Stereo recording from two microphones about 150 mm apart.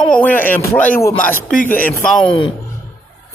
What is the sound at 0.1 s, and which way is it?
Chopping, 10° left (ahead or behind).